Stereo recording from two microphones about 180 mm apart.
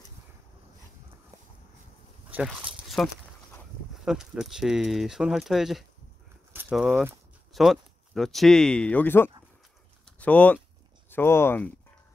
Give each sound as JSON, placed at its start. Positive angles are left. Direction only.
{"t": 2.3, "sound": "speech", "side_deg": -5}